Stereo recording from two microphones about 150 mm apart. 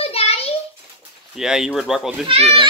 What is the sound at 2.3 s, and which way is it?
Speech, 40° right (ahead or behind).